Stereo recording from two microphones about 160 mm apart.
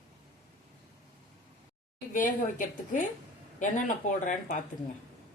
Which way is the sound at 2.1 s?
55° left (ahead or behind).